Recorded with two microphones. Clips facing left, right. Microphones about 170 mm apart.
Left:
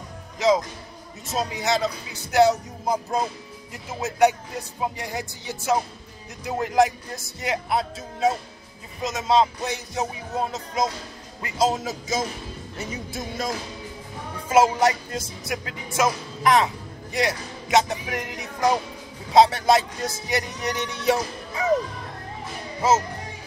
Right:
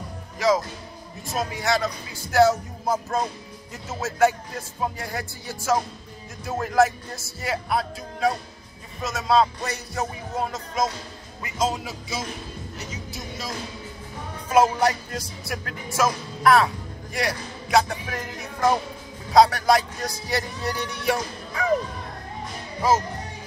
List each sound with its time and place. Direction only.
0.4 s music: 20° left (ahead or behind)
1.2 s speech: 20° left (ahead or behind)
10.5 s speech: 20° left (ahead or behind)
11.5 s speech: 40° left (ahead or behind)
12.7 s music: 55° left (ahead or behind)
14.5 s a man's voice: 25° left (ahead or behind)
22.8 s speech: 25° left (ahead or behind)